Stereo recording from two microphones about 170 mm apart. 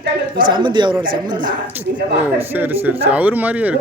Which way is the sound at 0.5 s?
25° right (ahead or behind).